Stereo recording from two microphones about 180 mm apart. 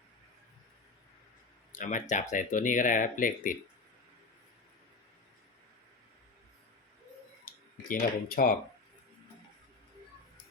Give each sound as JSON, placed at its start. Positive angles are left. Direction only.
{"t": 1.7, "sound": "speech", "side_deg": 45}
{"t": 7.4, "sound": "speech", "side_deg": 55}